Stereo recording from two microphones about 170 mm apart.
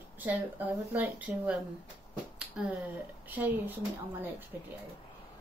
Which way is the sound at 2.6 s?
10° right (ahead or behind).